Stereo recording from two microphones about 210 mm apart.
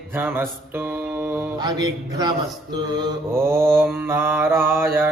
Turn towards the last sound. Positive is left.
turn(degrees=-10)  # may be behind; listen again after turning